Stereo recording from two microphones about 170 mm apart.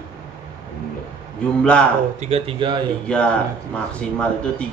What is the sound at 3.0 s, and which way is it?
A man's voice, 5° left (ahead or behind).